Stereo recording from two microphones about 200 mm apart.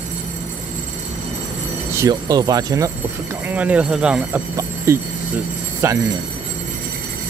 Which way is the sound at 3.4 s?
5° right (ahead or behind).